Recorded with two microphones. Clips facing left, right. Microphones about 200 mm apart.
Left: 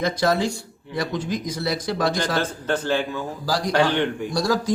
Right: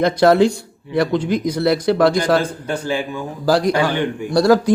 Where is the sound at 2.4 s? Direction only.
10° right (ahead or behind).